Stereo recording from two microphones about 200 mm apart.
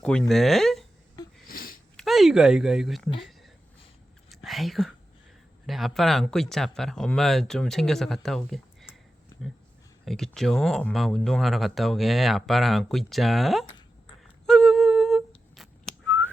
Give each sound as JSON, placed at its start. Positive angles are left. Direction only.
{"t": 0.0, "sound": "speech", "side_deg": 5}
{"t": 1.5, "sound": "a sound", "side_deg": 45}
{"t": 2.0, "sound": "speech", "side_deg": 0}
{"t": 4.4, "sound": "speech", "side_deg": 0}
{"t": 9.3, "sound": "dog", "side_deg": 20}
{"t": 10.1, "sound": "speech", "side_deg": 0}
{"t": 14.4, "sound": "whistling", "side_deg": 0}